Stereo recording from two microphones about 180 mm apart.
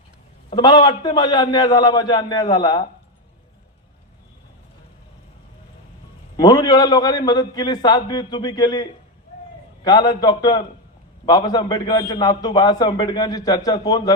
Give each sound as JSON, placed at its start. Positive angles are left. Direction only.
{"t": 0.5, "sound": "a man's voice", "side_deg": 25}
{"t": 6.3, "sound": "a man's voice", "side_deg": 20}